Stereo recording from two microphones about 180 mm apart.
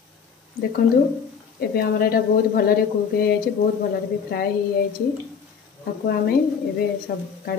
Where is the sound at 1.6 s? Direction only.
60° left (ahead or behind).